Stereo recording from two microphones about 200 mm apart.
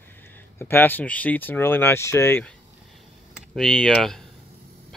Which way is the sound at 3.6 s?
5° left (ahead or behind).